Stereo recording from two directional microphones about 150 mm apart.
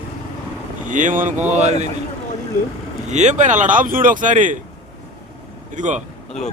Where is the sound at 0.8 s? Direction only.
60° right (ahead or behind).